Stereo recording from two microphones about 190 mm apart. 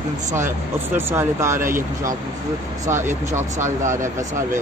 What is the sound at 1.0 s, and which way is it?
Speech, 10° right (ahead or behind).